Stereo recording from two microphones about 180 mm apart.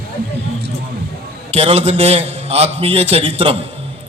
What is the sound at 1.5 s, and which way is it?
A man's voice, 35° right (ahead or behind).